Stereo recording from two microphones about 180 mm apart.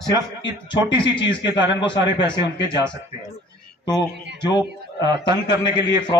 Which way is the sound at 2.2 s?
25° left (ahead or behind).